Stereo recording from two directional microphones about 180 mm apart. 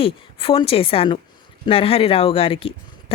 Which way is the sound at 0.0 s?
30° left (ahead or behind).